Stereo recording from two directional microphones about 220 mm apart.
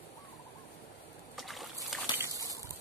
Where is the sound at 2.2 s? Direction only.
15° right (ahead or behind).